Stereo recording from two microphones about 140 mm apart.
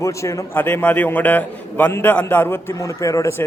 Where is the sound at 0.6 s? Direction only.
10° left (ahead or behind).